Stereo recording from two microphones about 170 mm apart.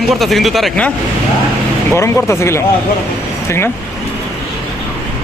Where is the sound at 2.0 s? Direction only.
15° left (ahead or behind).